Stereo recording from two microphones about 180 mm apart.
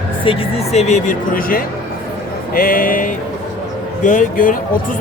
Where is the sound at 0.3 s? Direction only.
30° left (ahead or behind).